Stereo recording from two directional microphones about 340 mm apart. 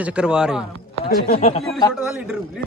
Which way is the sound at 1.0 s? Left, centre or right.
Left.